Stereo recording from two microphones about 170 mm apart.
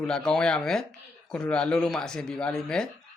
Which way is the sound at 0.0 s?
5° left (ahead or behind).